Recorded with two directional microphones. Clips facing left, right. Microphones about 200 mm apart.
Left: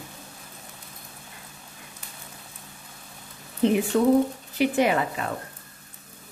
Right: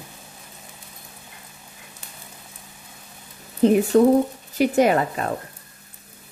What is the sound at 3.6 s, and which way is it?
A woman's voice, 40° right (ahead or behind).